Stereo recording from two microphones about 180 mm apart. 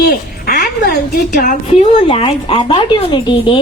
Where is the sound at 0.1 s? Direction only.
55° left (ahead or behind).